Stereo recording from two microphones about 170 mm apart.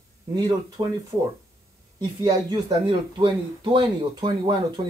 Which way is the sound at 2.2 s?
25° right (ahead or behind).